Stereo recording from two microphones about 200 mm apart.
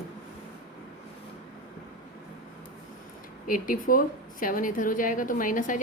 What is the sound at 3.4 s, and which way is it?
A woman's voice, 40° left (ahead or behind).